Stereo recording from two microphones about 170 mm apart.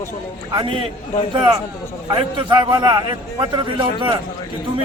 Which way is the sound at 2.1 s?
25° right (ahead or behind).